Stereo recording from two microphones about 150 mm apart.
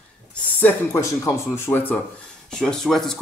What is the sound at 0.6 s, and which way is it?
Speech, 20° left (ahead or behind).